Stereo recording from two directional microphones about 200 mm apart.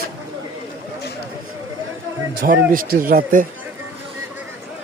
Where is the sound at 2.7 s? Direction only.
45° right (ahead or behind).